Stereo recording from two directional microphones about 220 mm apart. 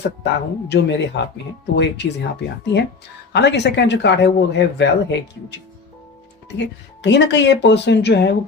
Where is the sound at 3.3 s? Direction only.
50° left (ahead or behind).